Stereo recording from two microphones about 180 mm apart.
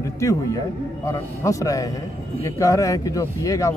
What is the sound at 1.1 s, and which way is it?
Speech, 20° left (ahead or behind).